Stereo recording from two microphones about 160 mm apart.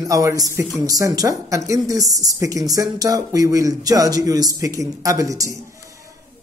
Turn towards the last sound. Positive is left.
turn(degrees=-20)  # may be behind; listen again after turning